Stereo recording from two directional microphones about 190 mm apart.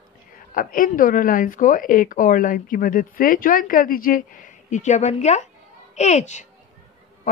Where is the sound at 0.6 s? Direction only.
45° left (ahead or behind).